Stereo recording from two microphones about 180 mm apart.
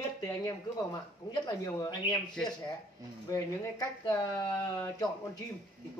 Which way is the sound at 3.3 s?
20° left (ahead or behind).